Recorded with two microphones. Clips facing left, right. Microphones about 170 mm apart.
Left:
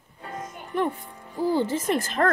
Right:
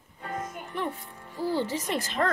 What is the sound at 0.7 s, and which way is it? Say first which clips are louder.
Speech: left 8 dB; 50° left (ahead or behind).